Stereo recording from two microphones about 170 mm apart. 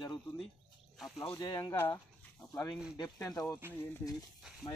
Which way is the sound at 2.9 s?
20° left (ahead or behind).